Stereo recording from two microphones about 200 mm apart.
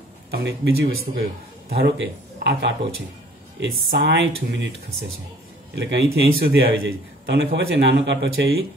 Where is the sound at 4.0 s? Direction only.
60° right (ahead or behind).